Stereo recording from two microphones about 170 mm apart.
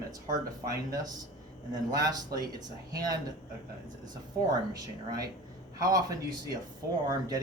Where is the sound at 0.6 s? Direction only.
20° right (ahead or behind).